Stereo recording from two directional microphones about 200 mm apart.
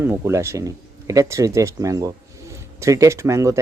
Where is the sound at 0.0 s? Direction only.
10° right (ahead or behind).